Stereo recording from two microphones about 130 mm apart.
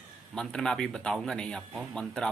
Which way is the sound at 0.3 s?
5° left (ahead or behind).